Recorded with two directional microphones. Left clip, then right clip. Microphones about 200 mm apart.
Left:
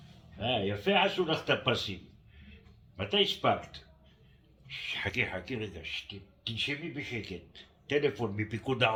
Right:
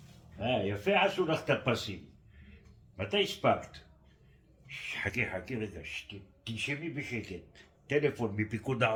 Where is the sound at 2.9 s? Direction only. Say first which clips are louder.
Left 3 dB; 15° right (ahead or behind).